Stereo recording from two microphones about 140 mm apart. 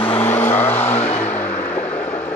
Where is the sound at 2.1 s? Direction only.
10° left (ahead or behind).